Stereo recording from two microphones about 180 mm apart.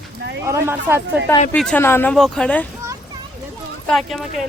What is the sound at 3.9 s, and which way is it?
Speech, centre (ahead or behind).